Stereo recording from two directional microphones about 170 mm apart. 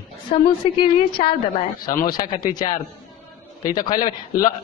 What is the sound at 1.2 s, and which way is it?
Speech, 45° left (ahead or behind).